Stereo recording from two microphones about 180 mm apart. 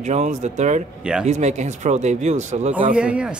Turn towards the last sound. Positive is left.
turn(degrees=-5)  # may be behind; listen again after turning